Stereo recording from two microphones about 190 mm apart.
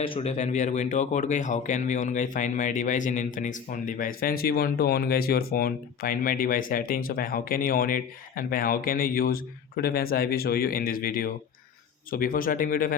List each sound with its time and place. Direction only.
0.0 s speech: 30° left (ahead or behind); by 13.0 s 45° left (ahead or behind)